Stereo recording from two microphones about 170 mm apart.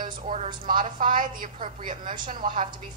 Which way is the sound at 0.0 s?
40° right (ahead or behind).